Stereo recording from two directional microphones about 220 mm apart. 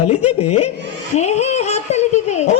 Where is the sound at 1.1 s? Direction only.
30° left (ahead or behind).